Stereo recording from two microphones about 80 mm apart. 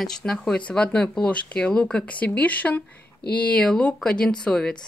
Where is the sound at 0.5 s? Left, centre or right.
Centre.